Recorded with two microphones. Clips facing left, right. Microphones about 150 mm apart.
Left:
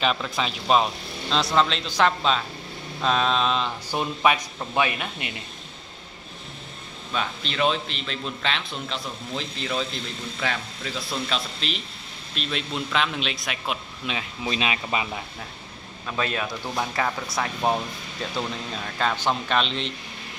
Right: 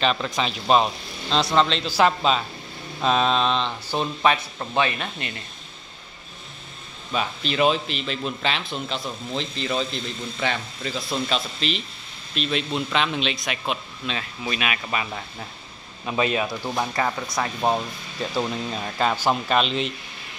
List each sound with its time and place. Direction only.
0.0 s a man's voice: centre (ahead or behind)
7.2 s a man's voice: 5° right (ahead or behind)
14.0 s speech: 15° left (ahead or behind)
14.5 s speech: 25° left (ahead or behind)
16.1 s a man's voice: 10° right (ahead or behind)
18.9 s speech: 10° right (ahead or behind)